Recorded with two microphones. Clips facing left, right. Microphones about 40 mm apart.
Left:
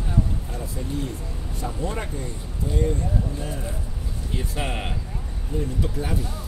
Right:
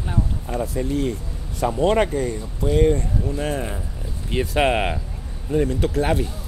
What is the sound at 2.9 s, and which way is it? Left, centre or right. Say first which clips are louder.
Speech: right 3 dB; right.